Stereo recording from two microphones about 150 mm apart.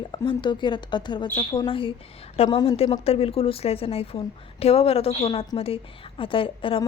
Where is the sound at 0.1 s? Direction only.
30° left (ahead or behind).